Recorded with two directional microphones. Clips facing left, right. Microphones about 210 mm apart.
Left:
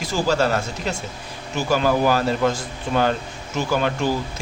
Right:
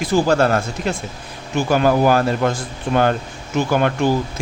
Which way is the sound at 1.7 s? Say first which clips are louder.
Right 3 dB; 55° right (ahead or behind).